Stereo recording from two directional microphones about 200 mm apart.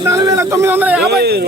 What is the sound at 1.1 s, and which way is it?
Speech, 55° right (ahead or behind).